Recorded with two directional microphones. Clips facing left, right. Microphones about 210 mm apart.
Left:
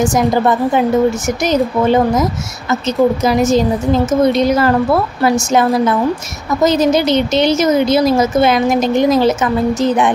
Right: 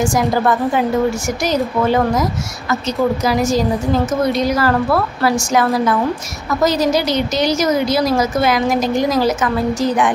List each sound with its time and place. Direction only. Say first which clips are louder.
0.0 s a woman's voice: left 3 dB; 20° left (ahead or behind)
3.3 s a woman's voice: left 3 dB; 20° left (ahead or behind)